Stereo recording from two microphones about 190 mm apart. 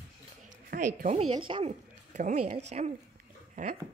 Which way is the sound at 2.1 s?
40° right (ahead or behind).